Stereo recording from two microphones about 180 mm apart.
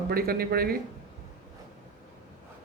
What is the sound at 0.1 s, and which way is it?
Speech, 55° right (ahead or behind).